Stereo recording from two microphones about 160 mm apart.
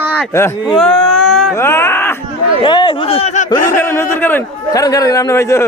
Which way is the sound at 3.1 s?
45° left (ahead or behind).